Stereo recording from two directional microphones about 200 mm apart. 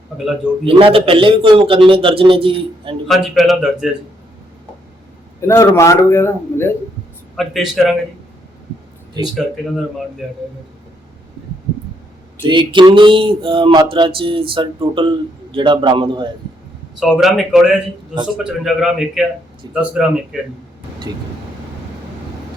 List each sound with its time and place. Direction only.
0.6 s a sound: 25° right (ahead or behind)
3.1 s speech: centre (ahead or behind)
5.5 s a man's voice: 15° left (ahead or behind)
7.3 s speech: centre (ahead or behind)
12.4 s a sound: 25° right (ahead or behind)
17.0 s speech: 5° right (ahead or behind)